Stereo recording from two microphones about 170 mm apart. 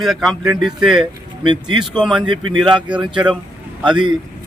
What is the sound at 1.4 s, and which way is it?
Speech, 30° right (ahead or behind).